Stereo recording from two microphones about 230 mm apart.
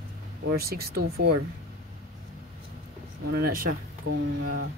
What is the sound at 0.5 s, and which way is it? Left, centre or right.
Speech, right.